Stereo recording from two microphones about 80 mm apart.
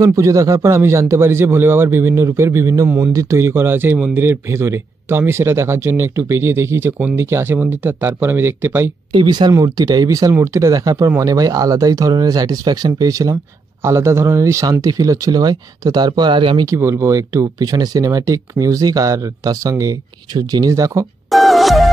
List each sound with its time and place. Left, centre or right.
0.0 s a man's voice: right
9.1 s speech: right
9.5 s speech: right
13.8 s speech: right
16.7 s speech: right
21.3 s music: centre